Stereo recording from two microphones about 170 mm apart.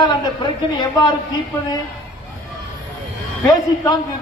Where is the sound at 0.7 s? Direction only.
25° left (ahead or behind).